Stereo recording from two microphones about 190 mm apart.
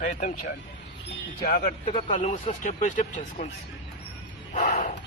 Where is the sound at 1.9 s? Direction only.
35° left (ahead or behind).